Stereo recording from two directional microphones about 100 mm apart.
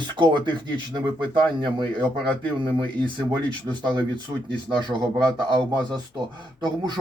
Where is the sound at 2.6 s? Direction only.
55° right (ahead or behind).